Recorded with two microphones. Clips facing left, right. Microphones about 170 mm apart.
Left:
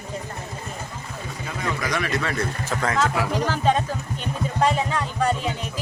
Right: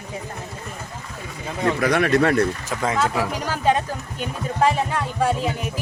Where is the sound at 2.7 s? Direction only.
10° right (ahead or behind).